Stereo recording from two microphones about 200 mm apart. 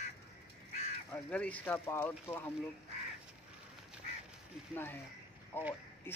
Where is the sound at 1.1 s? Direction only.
5° left (ahead or behind).